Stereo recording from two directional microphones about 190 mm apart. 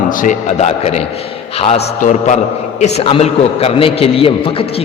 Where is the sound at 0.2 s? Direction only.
40° left (ahead or behind).